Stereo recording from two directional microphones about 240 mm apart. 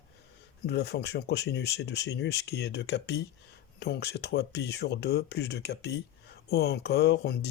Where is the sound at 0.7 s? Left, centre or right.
Left.